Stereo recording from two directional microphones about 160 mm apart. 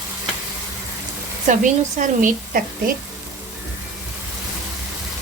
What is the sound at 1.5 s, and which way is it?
Speech, 50° right (ahead or behind).